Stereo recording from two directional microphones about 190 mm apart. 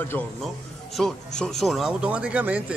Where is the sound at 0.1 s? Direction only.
5° left (ahead or behind).